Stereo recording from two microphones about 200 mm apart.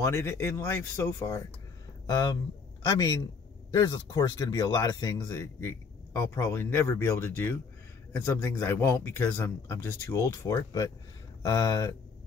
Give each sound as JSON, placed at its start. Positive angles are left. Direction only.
{"t": 0.0, "sound": "speech", "side_deg": 15}